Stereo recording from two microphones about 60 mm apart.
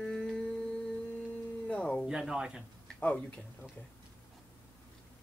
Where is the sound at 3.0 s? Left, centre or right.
Left.